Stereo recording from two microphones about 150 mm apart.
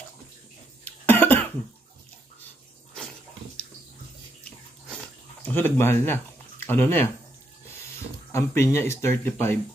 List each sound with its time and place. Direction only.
0.8 s cough: 15° left (ahead or behind)
5.4 s speech: 15° left (ahead or behind)
8.3 s speech: 15° left (ahead or behind)